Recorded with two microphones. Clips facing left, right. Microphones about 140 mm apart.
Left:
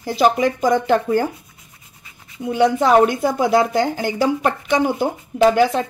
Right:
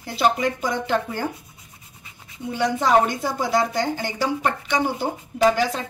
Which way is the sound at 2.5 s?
55° left (ahead or behind).